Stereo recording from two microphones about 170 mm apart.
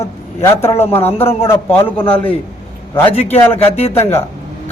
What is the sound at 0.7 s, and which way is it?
Speech, 35° left (ahead or behind).